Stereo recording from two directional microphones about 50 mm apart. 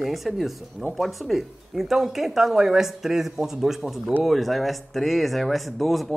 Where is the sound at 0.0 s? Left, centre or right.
Centre.